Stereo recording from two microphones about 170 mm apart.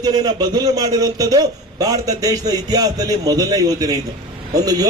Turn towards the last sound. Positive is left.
turn(degrees=-20)  # may be behind; listen again after turning